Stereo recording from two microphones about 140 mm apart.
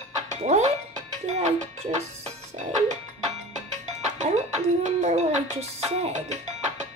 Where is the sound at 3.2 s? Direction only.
55° right (ahead or behind).